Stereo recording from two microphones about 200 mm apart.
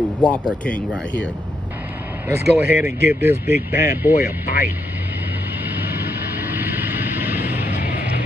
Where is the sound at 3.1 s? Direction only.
10° right (ahead or behind).